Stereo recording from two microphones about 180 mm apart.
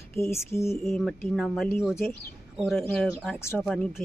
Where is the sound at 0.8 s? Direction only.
Centre (ahead or behind).